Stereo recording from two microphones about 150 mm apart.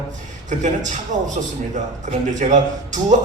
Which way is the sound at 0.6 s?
55° right (ahead or behind).